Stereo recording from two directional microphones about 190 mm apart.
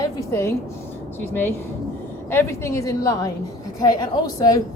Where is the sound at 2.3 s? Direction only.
15° left (ahead or behind).